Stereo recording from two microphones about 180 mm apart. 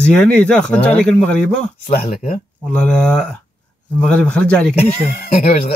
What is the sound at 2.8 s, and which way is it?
A man's voice, 5° left (ahead or behind).